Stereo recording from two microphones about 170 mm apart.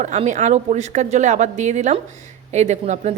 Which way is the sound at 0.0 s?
45° right (ahead or behind).